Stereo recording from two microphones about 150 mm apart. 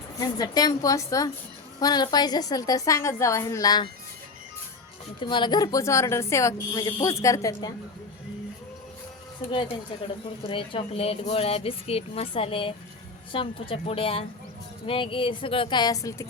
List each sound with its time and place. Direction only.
0.2 s speech: 25° left (ahead or behind)
5.2 s speech: 30° left (ahead or behind)
10.5 s a woman's voice: 35° left (ahead or behind)